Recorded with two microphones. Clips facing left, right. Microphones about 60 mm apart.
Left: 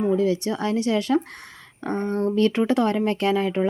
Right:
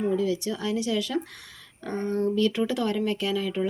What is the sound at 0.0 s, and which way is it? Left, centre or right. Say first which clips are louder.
Speech: left 4 dB; left.